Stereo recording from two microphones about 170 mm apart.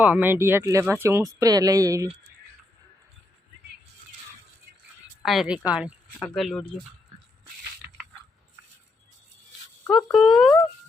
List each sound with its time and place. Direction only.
0.0 s speech: 10° right (ahead or behind)
5.2 s speech: centre (ahead or behind)
10.1 s speech: centre (ahead or behind)